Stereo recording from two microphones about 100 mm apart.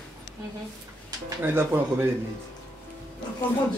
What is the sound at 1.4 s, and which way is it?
Speech, 20° right (ahead or behind).